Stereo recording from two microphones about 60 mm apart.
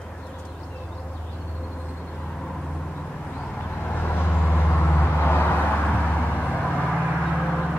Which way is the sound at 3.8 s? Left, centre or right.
Left.